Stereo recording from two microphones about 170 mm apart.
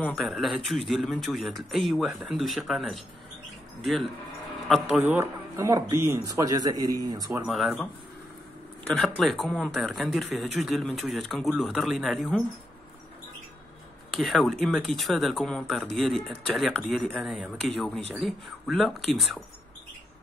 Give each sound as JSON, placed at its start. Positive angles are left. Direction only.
{"t": 0.0, "sound": "a man's voice", "side_deg": 0}
{"t": 7.4, "sound": "speech", "side_deg": 0}
{"t": 8.9, "sound": "speech", "side_deg": 0}
{"t": 14.1, "sound": "speech", "side_deg": 0}